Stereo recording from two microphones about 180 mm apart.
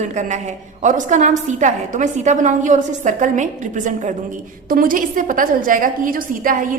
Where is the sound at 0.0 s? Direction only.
40° right (ahead or behind).